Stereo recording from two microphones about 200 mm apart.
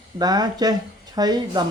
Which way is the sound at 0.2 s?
20° right (ahead or behind).